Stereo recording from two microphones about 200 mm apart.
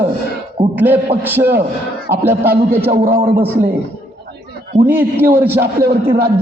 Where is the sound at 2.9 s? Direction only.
50° right (ahead or behind).